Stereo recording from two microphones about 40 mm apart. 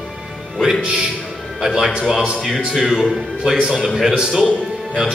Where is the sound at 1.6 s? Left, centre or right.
Centre.